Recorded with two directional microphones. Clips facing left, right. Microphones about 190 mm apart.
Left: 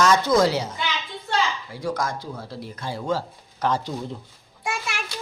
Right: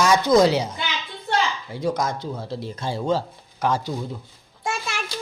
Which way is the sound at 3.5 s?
10° right (ahead or behind).